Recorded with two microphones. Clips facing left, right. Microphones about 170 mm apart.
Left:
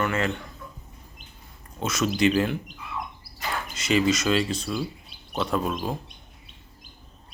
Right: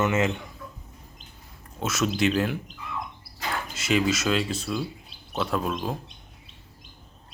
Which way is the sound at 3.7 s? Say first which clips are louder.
Left 2 dB; 5° right (ahead or behind).